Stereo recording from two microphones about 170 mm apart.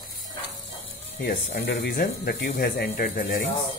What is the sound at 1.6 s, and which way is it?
Speech, 65° left (ahead or behind).